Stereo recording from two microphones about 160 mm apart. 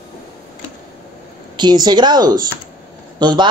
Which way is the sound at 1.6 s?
25° right (ahead or behind).